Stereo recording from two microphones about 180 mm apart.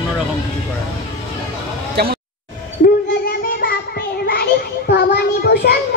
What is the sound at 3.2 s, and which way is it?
Child singing, 60° left (ahead or behind).